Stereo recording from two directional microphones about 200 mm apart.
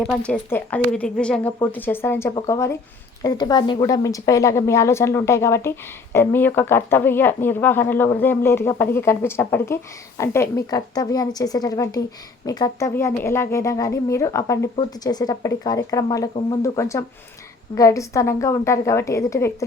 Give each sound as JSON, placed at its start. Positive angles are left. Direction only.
{"t": 0.0, "sound": "a woman's voice", "side_deg": 5}